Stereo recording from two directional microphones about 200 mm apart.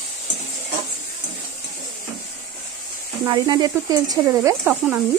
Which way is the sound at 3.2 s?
20° right (ahead or behind).